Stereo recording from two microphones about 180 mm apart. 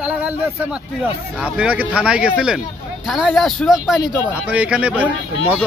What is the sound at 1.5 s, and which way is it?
Speech, 5° right (ahead or behind).